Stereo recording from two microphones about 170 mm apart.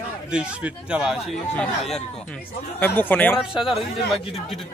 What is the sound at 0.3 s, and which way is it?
A man's voice, 5° right (ahead or behind).